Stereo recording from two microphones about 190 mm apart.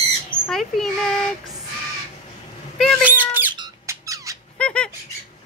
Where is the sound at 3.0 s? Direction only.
10° right (ahead or behind).